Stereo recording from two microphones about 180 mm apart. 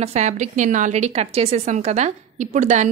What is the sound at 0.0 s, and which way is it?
A woman's voice, 40° right (ahead or behind).